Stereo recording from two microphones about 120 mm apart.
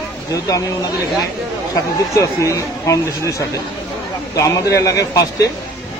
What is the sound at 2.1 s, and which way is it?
Speech, 25° left (ahead or behind).